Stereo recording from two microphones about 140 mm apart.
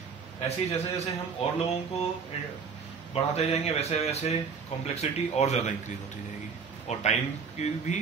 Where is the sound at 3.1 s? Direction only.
45° left (ahead or behind).